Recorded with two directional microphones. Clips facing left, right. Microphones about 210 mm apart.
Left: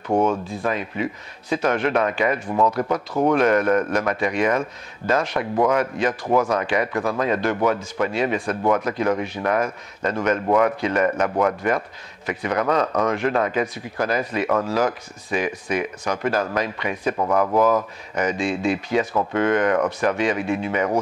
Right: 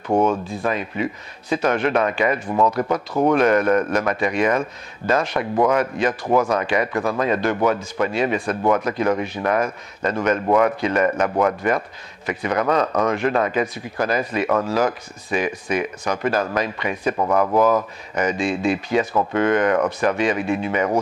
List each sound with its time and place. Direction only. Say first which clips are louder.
0.1 s speech: right 1 dB; 25° right (ahead or behind)
0.7 s speech: right 1 dB; 15° right (ahead or behind)